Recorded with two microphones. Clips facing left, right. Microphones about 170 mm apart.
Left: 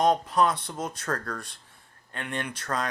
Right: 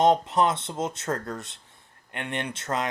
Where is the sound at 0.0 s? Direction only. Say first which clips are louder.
Right 2 dB; 25° right (ahead or behind).